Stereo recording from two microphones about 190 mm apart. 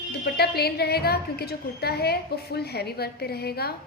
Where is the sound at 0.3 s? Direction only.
55° left (ahead or behind).